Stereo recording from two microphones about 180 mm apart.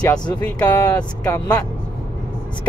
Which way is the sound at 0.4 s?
20° left (ahead or behind).